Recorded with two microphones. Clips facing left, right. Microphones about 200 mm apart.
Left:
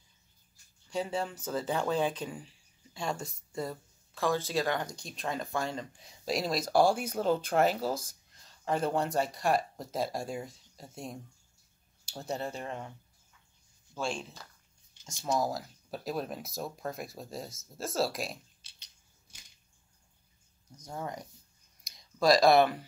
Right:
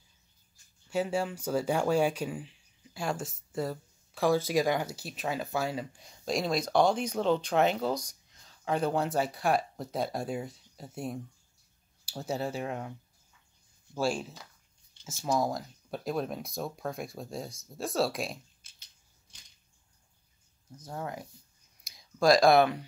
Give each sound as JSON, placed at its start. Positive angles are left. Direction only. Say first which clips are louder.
{"t": 0.8, "sound": "speech", "louder": "right 3 dB", "side_deg": -5}
{"t": 13.9, "sound": "speech", "louder": "right 5 dB", "side_deg": -5}
{"t": 20.8, "sound": "speech", "louder": "right 1 dB", "side_deg": -5}